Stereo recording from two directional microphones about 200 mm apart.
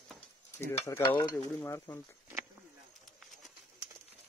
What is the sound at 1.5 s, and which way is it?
Stir, 10° left (ahead or behind).